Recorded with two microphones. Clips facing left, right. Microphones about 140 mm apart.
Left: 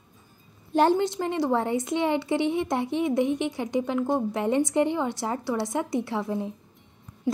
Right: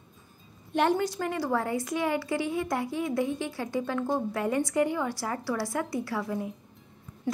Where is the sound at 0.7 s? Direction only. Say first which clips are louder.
Left 4 dB; 25° left (ahead or behind).